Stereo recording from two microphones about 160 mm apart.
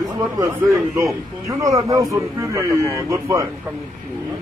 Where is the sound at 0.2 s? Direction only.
20° right (ahead or behind).